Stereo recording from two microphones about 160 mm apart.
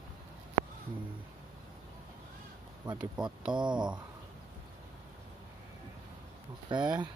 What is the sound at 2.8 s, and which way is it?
Speech, 25° right (ahead or behind).